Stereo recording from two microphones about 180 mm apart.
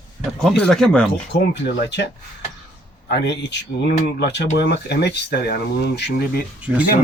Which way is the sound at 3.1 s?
70° left (ahead or behind).